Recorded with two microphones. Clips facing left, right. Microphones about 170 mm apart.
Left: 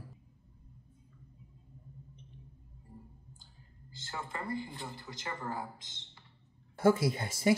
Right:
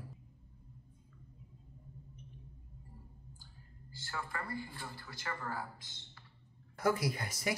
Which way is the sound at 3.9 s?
20° left (ahead or behind).